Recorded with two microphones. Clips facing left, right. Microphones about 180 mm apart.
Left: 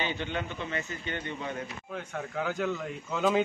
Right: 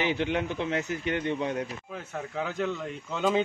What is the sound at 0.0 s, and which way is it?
A man's voice, 85° right.